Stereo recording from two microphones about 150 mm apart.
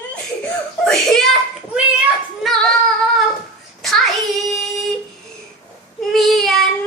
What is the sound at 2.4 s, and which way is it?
Child singing, centre (ahead or behind).